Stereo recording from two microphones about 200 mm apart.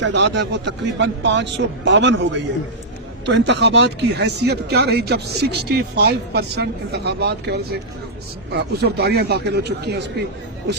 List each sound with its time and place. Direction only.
0.1 s speech: 60° right (ahead or behind)